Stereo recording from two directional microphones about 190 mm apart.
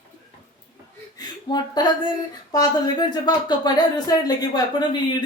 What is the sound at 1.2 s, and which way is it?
Speech, 20° left (ahead or behind).